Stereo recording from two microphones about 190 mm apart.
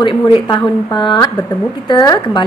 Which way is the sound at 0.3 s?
20° left (ahead or behind).